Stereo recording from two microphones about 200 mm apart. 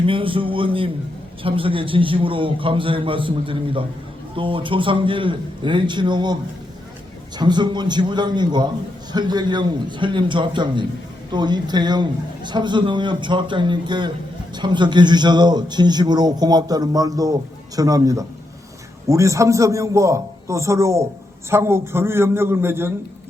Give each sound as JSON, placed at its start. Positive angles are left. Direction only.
{"t": 0.0, "sound": "a man's voice", "side_deg": -25}
{"t": 7.3, "sound": "a man's voice", "side_deg": -20}